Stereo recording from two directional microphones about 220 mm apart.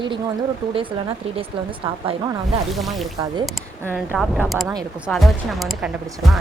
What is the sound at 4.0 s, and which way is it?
A woman's voice, centre (ahead or behind).